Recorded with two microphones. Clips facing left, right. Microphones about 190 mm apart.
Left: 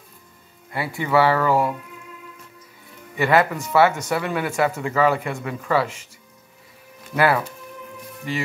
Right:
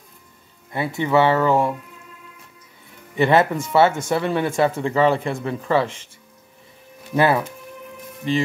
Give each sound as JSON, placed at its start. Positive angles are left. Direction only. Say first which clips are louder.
{"t": 0.7, "sound": "speech", "louder": "right 3 dB", "side_deg": -20}
{"t": 3.2, "sound": "speech", "louder": "right 2 dB", "side_deg": -25}
{"t": 7.2, "sound": "speech", "louder": "right 2 dB", "side_deg": -25}